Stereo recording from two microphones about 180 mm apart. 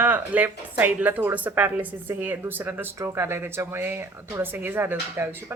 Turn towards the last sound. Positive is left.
turn(degrees=-10)  # may be behind; listen again after turning